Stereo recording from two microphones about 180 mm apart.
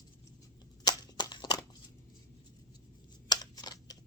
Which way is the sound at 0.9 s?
25° left (ahead or behind).